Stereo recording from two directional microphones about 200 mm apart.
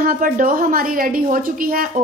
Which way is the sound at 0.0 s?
45° right (ahead or behind).